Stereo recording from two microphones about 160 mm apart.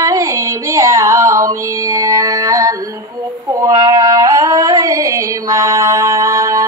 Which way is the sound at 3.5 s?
20° right (ahead or behind).